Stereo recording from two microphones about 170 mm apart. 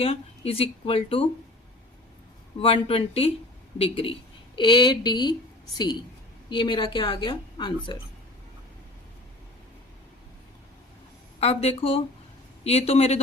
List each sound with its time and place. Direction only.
0.0 s speech: 35° left (ahead or behind)
2.6 s a woman's voice: 35° left (ahead or behind)
11.3 s speech: 35° left (ahead or behind)